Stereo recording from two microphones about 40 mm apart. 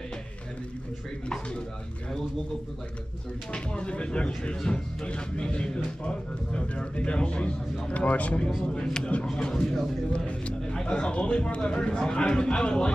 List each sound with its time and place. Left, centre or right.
3.5 s a man's voice: left
8.8 s a man's voice: centre
10.1 s a man's voice: left